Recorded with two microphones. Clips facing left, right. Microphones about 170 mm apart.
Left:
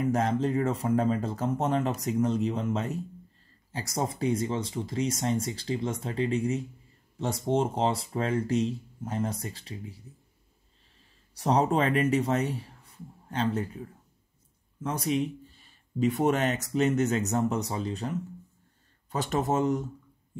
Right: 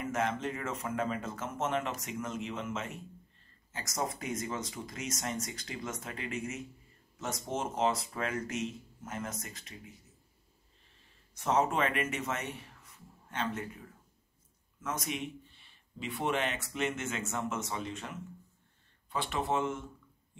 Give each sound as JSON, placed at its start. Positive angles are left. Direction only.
{"t": 0.0, "sound": "speech", "side_deg": 35}
{"t": 11.3, "sound": "speech", "side_deg": 35}